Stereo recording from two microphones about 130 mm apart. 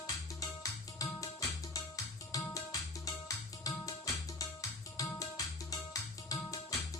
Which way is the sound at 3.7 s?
25° left (ahead or behind).